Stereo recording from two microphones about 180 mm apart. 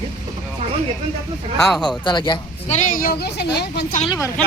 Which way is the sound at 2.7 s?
45° left (ahead or behind).